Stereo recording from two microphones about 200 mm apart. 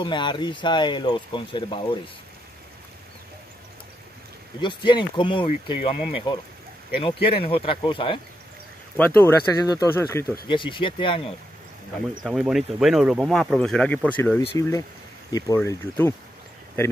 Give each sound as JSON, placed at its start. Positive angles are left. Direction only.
{"t": 0.0, "sound": "speech", "side_deg": 25}
{"t": 4.6, "sound": "speech", "side_deg": 25}
{"t": 8.9, "sound": "speech", "side_deg": 10}
{"t": 12.1, "sound": "speech", "side_deg": 0}